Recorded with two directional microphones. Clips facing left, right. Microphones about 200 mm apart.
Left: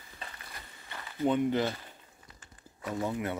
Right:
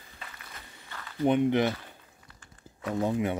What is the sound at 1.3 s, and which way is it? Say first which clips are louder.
Speech: right 4 dB; 20° right (ahead or behind).